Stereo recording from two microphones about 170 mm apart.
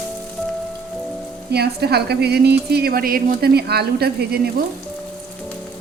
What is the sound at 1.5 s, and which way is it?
A woman's voice, 70° right (ahead or behind).